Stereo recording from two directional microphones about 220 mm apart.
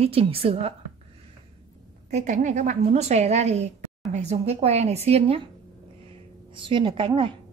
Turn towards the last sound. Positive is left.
turn(degrees=-25)  # may be behind; listen again after turning